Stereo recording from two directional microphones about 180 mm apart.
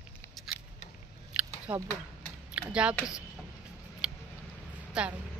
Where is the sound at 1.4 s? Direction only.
10° right (ahead or behind).